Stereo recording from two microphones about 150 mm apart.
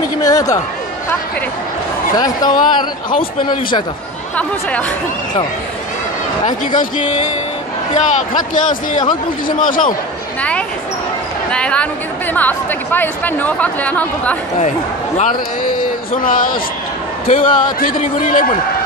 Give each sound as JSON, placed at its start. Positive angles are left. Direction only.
{"t": 0.2, "sound": "a man's voice", "side_deg": 25}
{"t": 2.1, "sound": "a man's voice", "side_deg": 25}
{"t": 4.4, "sound": "speech", "side_deg": 10}
{"t": 6.8, "sound": "speech", "side_deg": 55}
{"t": 11.5, "sound": "speech", "side_deg": 5}
{"t": 15.1, "sound": "a man's voice", "side_deg": 65}